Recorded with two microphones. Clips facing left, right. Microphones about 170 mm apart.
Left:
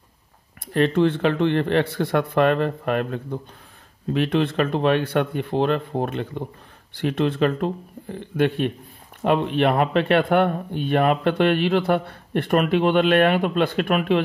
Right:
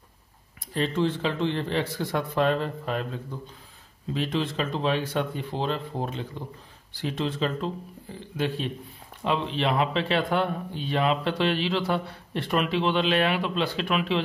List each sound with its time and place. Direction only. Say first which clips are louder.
0.7 s speech: left 7 dB; 60° left (ahead or behind)